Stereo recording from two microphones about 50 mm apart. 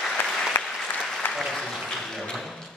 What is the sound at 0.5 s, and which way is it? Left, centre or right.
Applause, left.